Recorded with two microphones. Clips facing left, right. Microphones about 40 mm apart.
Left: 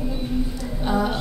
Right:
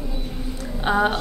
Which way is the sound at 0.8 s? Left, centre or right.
Right.